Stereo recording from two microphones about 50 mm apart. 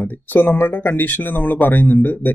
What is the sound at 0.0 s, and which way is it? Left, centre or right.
Speech, left.